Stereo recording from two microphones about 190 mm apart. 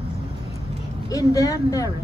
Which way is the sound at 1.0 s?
20° left (ahead or behind).